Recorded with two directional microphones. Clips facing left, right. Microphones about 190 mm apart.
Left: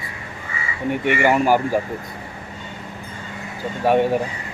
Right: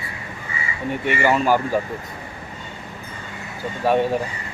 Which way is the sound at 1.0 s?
15° left (ahead or behind).